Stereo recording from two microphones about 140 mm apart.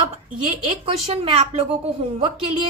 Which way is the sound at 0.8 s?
45° right (ahead or behind).